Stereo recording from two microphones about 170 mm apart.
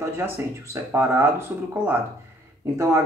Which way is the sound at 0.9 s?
15° right (ahead or behind).